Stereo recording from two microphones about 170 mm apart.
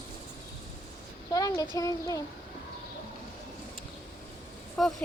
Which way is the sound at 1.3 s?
20° left (ahead or behind).